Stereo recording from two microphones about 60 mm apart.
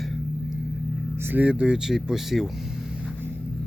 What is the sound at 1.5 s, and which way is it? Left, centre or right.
Speech, centre.